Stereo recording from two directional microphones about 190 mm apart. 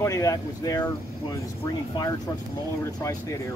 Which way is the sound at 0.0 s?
20° left (ahead or behind).